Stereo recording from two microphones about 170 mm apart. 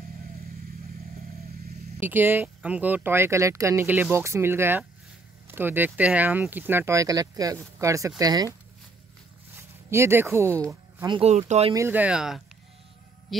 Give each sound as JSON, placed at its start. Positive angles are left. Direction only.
{"t": 2.0, "sound": "speech", "side_deg": -10}
{"t": 9.8, "sound": "speech", "side_deg": -15}
{"t": 11.1, "sound": "speech", "side_deg": -40}
{"t": 11.7, "sound": "speech", "side_deg": -15}